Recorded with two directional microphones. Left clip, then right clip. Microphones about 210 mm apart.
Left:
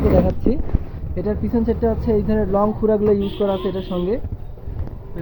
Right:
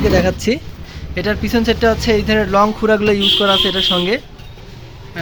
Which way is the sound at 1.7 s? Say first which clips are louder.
Right 6 dB; 25° right (ahead or behind).